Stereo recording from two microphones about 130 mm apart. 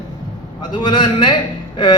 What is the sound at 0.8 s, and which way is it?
Speech, 35° left (ahead or behind).